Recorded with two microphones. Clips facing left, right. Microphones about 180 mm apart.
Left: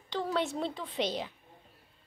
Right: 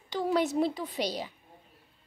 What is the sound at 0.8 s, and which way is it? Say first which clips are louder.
Speech: even; 40° right (ahead or behind).